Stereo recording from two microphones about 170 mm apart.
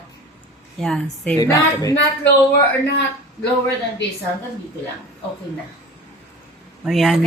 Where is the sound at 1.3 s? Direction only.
20° left (ahead or behind).